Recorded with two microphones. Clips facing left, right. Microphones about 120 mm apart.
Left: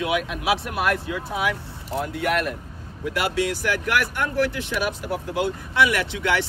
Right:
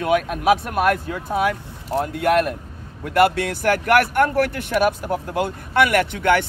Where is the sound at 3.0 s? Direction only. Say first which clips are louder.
Right 6 dB; 55° right (ahead or behind).